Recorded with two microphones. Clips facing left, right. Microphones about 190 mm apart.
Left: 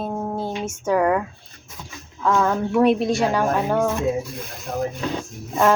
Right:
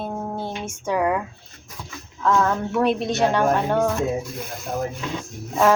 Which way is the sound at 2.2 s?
10° left (ahead or behind).